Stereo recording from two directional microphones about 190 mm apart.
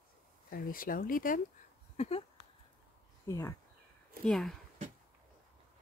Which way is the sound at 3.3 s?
15° left (ahead or behind).